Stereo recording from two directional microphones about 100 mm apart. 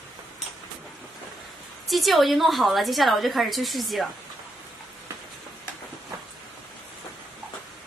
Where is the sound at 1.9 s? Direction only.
Centre (ahead or behind).